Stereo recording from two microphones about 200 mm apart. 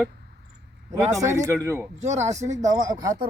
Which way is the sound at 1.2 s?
15° right (ahead or behind).